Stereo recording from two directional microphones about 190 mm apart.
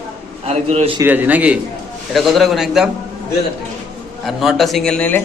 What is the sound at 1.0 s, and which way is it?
A man's voice, 10° right (ahead or behind).